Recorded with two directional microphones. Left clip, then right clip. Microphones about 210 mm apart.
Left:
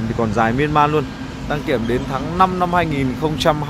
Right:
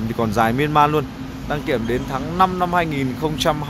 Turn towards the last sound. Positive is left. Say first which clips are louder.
# left 3 dB
turn(degrees=5)  # may be behind; listen again after turning